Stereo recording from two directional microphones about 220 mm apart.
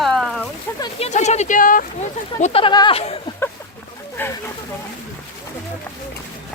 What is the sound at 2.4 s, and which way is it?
Speech, 30° left (ahead or behind).